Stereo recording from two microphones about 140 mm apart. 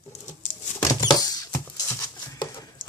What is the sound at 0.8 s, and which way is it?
Rodents, 30° left (ahead or behind).